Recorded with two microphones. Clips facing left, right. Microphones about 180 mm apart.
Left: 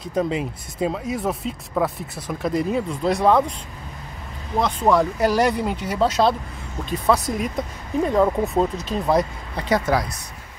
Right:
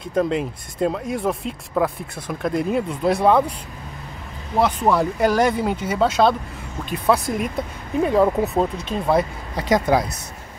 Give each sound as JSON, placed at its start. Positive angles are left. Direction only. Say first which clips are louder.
{"t": 0.1, "sound": "speech", "louder": "right 2 dB", "side_deg": 0}
{"t": 4.6, "sound": "speech", "louder": "even", "side_deg": -5}
{"t": 9.6, "sound": "speech", "louder": "right 2 dB", "side_deg": -15}